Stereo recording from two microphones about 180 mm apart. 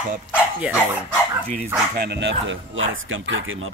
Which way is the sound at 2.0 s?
75° right (ahead or behind).